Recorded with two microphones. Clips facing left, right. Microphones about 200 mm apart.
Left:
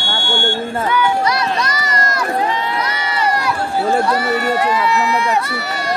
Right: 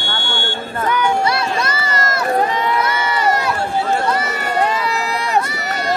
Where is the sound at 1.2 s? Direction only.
25° right (ahead or behind).